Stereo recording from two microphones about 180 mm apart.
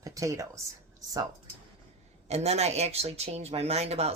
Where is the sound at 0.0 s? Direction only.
20° right (ahead or behind).